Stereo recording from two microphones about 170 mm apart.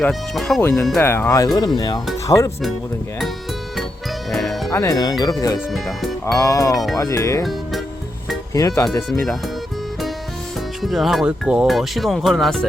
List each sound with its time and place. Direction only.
0.0 s speech: centre (ahead or behind)
1.0 s speech: 15° left (ahead or behind)
4.3 s music: centre (ahead or behind)
4.7 s speech: 20° left (ahead or behind)
8.5 s speech: 20° left (ahead or behind)
9.0 s speech: centre (ahead or behind)
10.8 s speech: centre (ahead or behind)